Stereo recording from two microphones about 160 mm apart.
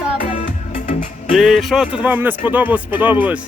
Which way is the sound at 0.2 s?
50° left (ahead or behind).